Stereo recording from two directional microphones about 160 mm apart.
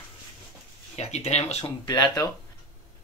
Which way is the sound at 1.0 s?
45° left (ahead or behind).